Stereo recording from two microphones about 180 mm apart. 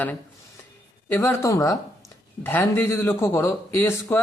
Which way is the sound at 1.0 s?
10° left (ahead or behind).